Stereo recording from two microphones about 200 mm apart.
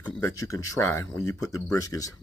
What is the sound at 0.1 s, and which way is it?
Speech, 15° left (ahead or behind).